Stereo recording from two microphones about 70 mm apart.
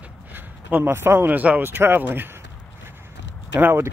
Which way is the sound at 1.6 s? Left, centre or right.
Right.